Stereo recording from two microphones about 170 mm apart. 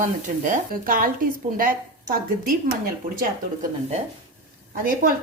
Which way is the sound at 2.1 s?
55° right (ahead or behind).